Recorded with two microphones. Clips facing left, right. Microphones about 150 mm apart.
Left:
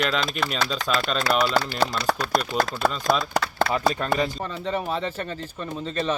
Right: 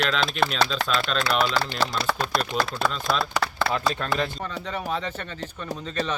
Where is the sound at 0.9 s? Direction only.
5° left (ahead or behind).